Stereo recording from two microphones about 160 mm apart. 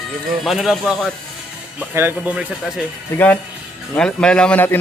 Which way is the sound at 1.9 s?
15° right (ahead or behind).